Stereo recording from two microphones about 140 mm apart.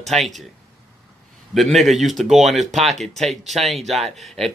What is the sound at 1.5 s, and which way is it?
Speech, centre (ahead or behind).